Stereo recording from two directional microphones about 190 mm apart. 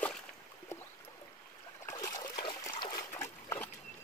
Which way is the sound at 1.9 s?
20° left (ahead or behind).